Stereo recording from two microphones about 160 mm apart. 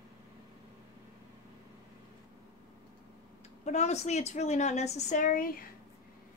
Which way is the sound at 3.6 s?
45° left (ahead or behind).